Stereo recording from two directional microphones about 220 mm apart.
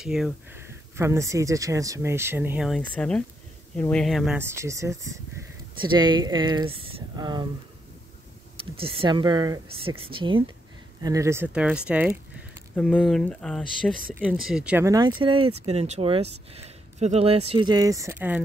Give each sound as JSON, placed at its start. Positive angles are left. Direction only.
{"t": 0.0, "sound": "speech", "side_deg": 0}
{"t": 8.7, "sound": "speech", "side_deg": -25}